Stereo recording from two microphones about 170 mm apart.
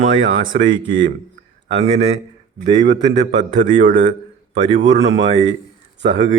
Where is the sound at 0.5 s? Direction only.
55° right (ahead or behind).